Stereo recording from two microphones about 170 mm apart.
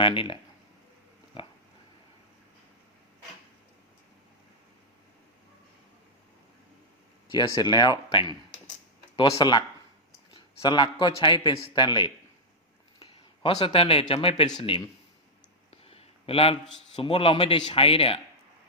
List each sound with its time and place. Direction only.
0.0 s a man's voice: 30° left (ahead or behind)
7.3 s a man's voice: 25° left (ahead or behind)